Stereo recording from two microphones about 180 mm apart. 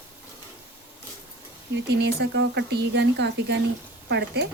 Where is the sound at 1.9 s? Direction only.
65° right (ahead or behind).